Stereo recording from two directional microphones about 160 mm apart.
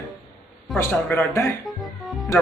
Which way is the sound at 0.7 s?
15° left (ahead or behind).